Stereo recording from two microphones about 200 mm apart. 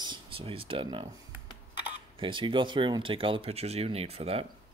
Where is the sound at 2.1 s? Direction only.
25° right (ahead or behind).